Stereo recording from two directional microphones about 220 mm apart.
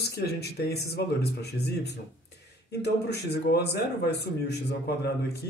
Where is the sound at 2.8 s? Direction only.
50° left (ahead or behind).